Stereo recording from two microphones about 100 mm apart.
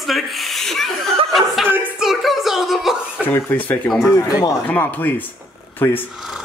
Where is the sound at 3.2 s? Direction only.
20° left (ahead or behind).